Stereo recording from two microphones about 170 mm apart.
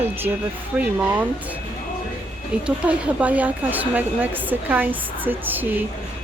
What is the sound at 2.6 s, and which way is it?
A woman's voice, 5° right (ahead or behind).